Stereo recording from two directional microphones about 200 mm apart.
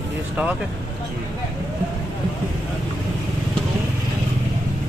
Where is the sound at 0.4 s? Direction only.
5° right (ahead or behind).